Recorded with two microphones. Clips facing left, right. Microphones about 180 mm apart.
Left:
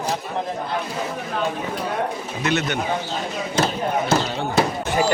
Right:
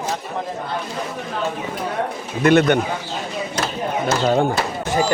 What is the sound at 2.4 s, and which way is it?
Speech, 55° right (ahead or behind).